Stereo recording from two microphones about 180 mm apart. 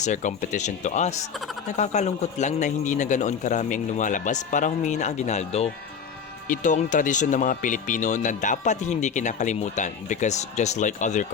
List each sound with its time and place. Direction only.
0.0 s a man's voice: 45° left (ahead or behind)